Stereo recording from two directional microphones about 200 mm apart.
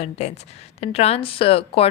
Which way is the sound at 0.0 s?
35° left (ahead or behind).